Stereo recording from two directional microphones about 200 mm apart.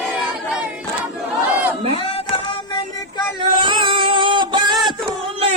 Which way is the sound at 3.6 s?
25° right (ahead or behind).